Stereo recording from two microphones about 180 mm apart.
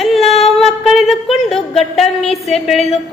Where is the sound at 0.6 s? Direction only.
Centre (ahead or behind).